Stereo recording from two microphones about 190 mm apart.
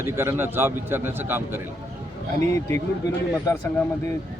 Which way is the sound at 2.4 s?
15° left (ahead or behind).